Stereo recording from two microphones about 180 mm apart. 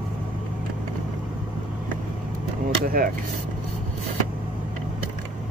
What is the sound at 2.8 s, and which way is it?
Speech, 50° right (ahead or behind).